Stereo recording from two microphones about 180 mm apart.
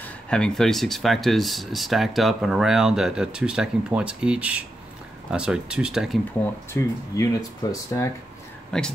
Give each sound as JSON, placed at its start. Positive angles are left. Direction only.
{"t": 0.0, "sound": "speech", "side_deg": 5}
{"t": 6.7, "sound": "speech", "side_deg": 10}
{"t": 8.7, "sound": "speech", "side_deg": 5}